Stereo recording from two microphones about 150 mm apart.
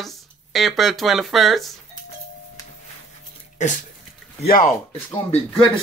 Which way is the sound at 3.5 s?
55° left (ahead or behind).